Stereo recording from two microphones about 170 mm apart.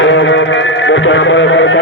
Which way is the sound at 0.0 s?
90° left.